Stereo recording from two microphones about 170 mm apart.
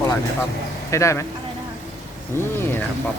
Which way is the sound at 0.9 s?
15° left (ahead or behind).